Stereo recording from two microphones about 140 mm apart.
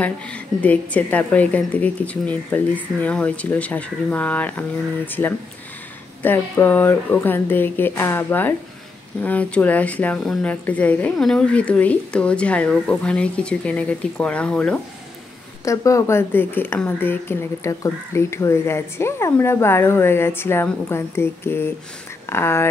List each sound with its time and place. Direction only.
0.0 s speech: 10° left (ahead or behind)
15.6 s speech: 20° left (ahead or behind)